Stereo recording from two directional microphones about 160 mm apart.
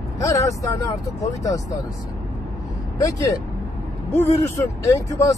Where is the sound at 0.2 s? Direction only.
20° left (ahead or behind).